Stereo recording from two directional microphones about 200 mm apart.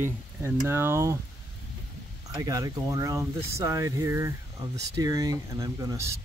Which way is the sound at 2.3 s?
15° right (ahead or behind).